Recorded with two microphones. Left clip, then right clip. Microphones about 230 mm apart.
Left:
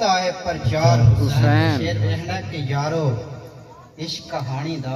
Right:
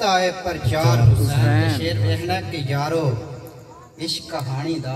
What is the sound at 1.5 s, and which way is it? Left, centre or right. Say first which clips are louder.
Speech: left 4 dB; left.